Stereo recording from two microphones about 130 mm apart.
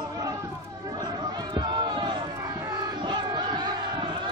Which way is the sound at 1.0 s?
30° right (ahead or behind).